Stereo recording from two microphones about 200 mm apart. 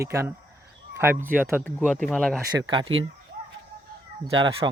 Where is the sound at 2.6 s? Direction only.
20° right (ahead or behind).